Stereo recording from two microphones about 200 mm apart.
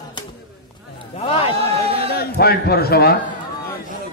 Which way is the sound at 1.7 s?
30° right (ahead or behind).